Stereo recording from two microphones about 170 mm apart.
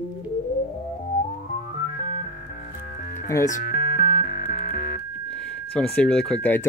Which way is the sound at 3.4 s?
50° left (ahead or behind).